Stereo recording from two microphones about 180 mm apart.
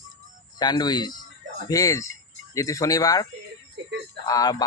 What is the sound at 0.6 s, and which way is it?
Speech, 25° left (ahead or behind).